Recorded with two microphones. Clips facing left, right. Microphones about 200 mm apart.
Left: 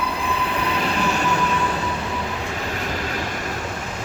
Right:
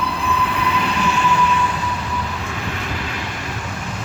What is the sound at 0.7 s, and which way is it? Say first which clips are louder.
Train: even; 35° left (ahead or behind).